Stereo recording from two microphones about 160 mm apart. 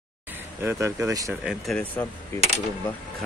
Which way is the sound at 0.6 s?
15° right (ahead or behind).